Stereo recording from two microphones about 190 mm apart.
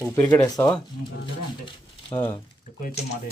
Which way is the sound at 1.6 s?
25° left (ahead or behind).